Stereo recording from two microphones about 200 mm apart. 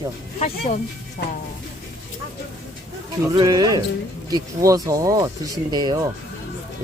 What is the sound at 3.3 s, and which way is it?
Speech, 20° right (ahead or behind).